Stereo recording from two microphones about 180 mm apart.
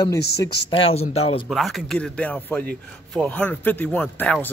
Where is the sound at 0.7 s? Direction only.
30° left (ahead or behind).